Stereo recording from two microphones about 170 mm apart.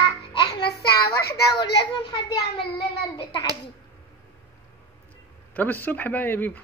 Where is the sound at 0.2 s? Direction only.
35° left (ahead or behind).